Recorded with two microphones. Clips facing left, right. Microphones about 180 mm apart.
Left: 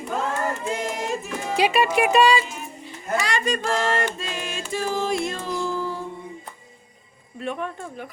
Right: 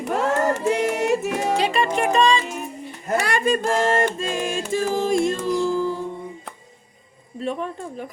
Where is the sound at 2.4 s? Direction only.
55° right (ahead or behind); by 5.9 s 40° right (ahead or behind).